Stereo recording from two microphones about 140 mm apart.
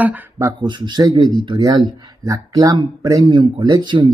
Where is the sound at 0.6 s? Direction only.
35° right (ahead or behind).